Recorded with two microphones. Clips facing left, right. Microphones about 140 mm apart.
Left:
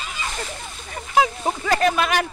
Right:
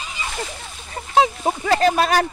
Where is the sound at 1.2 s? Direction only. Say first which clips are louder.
Right 2 dB; 30° right (ahead or behind).